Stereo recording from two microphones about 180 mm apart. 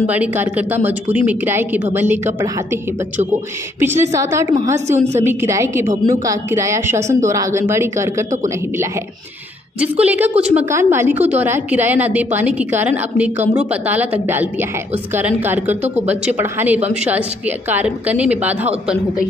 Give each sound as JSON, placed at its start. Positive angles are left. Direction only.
{"t": 0.1, "sound": "a woman's voice", "side_deg": -10}
{"t": 3.8, "sound": "a woman's voice", "side_deg": -15}
{"t": 4.8, "sound": "a woman's voice", "side_deg": -40}
{"t": 5.2, "sound": "a woman's voice", "side_deg": -15}
{"t": 9.8, "sound": "a woman's voice", "side_deg": -10}